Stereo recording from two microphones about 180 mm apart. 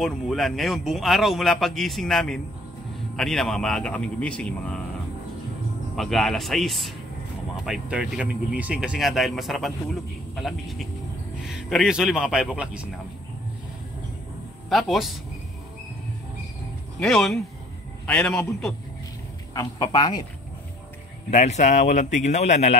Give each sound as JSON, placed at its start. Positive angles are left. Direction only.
{"t": 0.0, "sound": "a man's voice", "side_deg": 0}
{"t": 5.9, "sound": "a man's voice", "side_deg": 0}
{"t": 14.7, "sound": "a man's voice", "side_deg": 0}
{"t": 17.0, "sound": "a man's voice", "side_deg": 0}
{"t": 19.5, "sound": "a man's voice", "side_deg": 25}
{"t": 21.3, "sound": "a man's voice", "side_deg": 40}